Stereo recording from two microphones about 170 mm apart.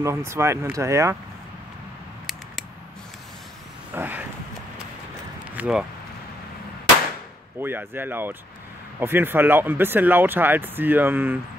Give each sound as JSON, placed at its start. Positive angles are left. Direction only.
{"t": 0.0, "sound": "speech", "side_deg": -15}
{"t": 3.9, "sound": "a sound", "side_deg": -10}
{"t": 5.6, "sound": "speech", "side_deg": -5}
{"t": 7.6, "sound": "speech", "side_deg": -10}